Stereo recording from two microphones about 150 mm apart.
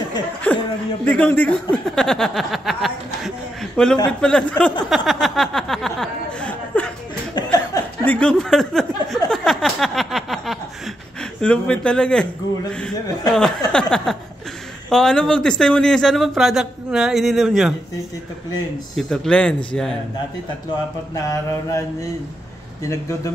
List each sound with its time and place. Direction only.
0.5 s a man's voice: 10° left (ahead or behind)
4.8 s a sound: centre (ahead or behind)
8.0 s speech: 10° left (ahead or behind)
9.3 s a sound: 5° left (ahead or behind)
11.4 s a man's voice: 5° left (ahead or behind)
13.7 s speech: 5° left (ahead or behind)
18.9 s speech: 5° left (ahead or behind)
21.1 s mantra: 20° left (ahead or behind)